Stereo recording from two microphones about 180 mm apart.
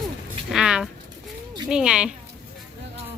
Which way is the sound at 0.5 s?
5° right (ahead or behind).